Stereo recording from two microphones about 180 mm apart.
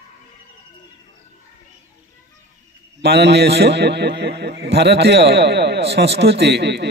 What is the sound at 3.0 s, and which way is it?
A man's voice, 70° right (ahead or behind).